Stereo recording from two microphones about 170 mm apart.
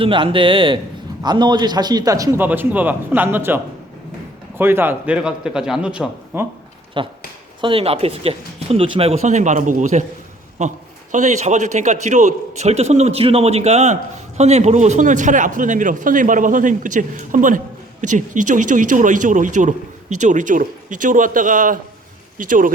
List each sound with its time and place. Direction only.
0.0 s a man's voice: 30° right (ahead or behind); by 6.5 s 10° right (ahead or behind)
7.0 s a man's voice: 30° right (ahead or behind); by 22.7 s 50° right (ahead or behind)